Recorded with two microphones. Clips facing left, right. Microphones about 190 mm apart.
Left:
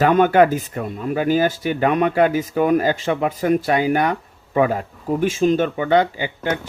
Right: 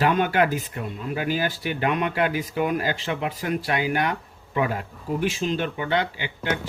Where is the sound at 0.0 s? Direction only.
45° left (ahead or behind).